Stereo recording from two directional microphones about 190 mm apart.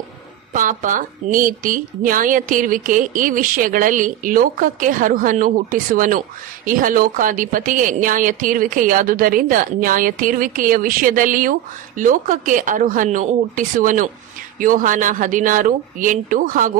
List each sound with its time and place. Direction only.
0.5 s speech: 45° right (ahead or behind)